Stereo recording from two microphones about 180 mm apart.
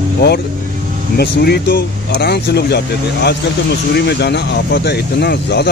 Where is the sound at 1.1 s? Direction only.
65° left (ahead or behind).